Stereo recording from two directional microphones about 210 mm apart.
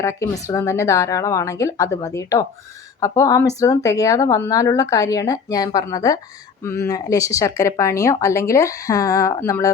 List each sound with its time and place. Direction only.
0.0 s speech: 15° left (ahead or behind)